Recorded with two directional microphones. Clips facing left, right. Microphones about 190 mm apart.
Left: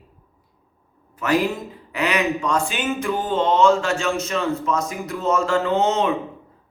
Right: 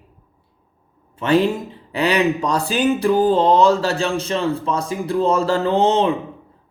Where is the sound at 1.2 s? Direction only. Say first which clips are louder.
Right 4 dB; 30° right (ahead or behind).